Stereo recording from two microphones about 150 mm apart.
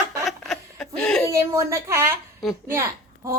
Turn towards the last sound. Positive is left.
turn(degrees=-20)  # may be behind; listen again after turning